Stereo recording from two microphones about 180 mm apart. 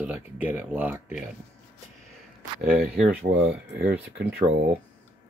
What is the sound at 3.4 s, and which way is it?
Speech, 70° right (ahead or behind).